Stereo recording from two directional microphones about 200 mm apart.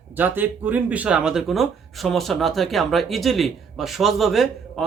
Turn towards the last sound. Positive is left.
turn(degrees=0)  # may be behind; listen again after turning